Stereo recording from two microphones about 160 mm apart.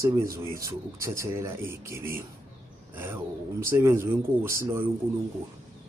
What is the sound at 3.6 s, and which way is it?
Speech, 15° right (ahead or behind).